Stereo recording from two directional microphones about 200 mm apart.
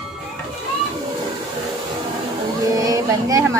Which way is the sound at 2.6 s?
15° right (ahead or behind).